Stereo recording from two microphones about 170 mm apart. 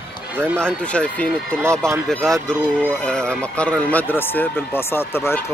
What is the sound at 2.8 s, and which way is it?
Speech, 5° left (ahead or behind).